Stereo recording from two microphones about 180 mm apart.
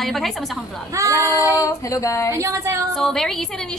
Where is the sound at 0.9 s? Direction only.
15° right (ahead or behind).